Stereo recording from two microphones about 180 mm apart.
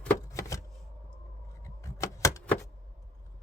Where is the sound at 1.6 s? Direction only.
15° left (ahead or behind).